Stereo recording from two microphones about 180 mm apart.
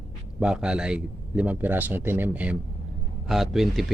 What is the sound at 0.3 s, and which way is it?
Speech, 5° right (ahead or behind).